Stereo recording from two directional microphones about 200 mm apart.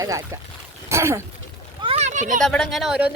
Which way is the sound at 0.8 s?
15° right (ahead or behind).